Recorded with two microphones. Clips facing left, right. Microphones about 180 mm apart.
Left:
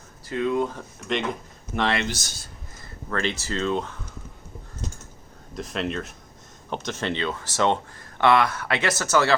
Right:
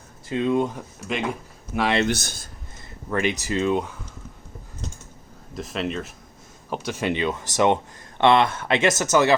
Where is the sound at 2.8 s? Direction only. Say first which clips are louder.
Right 3 dB; 15° right (ahead or behind).